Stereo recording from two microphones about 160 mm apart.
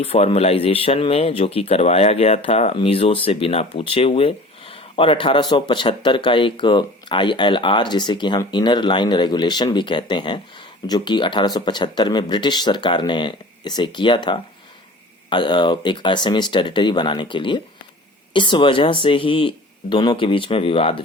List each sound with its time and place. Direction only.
0.0 s speech: 40° left (ahead or behind)